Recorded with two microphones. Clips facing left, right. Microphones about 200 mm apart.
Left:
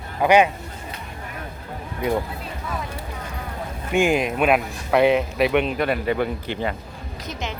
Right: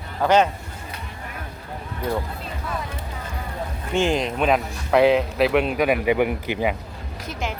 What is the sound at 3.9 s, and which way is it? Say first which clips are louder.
Speech: left 2 dB; 10° left (ahead or behind).